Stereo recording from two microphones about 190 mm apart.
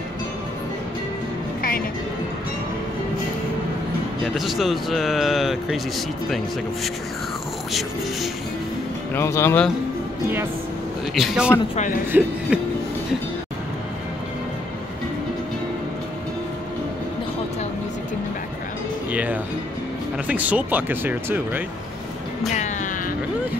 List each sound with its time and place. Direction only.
4.4 s speech: centre (ahead or behind)
9.1 s speech: 15° left (ahead or behind)
11.1 s speech: 5° right (ahead or behind)
20.2 s speech: 10° right (ahead or behind)
22.5 s music: 40° left (ahead or behind)